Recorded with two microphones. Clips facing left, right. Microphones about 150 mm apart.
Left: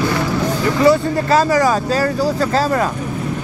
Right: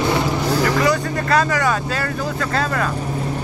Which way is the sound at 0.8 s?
30° left (ahead or behind).